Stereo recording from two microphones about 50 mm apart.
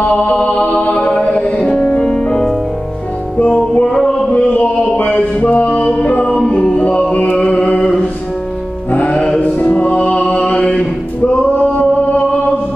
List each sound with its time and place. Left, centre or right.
0.0 s music: left
3.3 s music: left
4.3 s a sound: left
5.4 s music: left
6.5 s music: centre
7.3 s chant: left
8.9 s music: left